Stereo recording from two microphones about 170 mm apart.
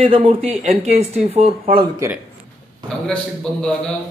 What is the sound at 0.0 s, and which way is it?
Speech, 35° right (ahead or behind).